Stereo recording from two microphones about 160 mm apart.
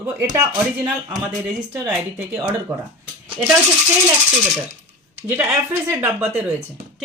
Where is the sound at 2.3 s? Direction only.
20° right (ahead or behind).